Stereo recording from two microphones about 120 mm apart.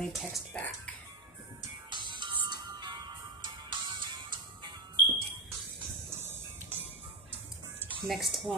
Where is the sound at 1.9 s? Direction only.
40° right (ahead or behind).